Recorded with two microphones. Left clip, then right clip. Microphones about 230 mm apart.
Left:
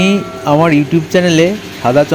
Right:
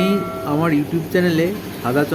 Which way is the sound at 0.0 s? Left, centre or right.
Left.